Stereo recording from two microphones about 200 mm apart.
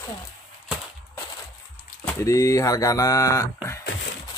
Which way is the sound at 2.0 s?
10° left (ahead or behind).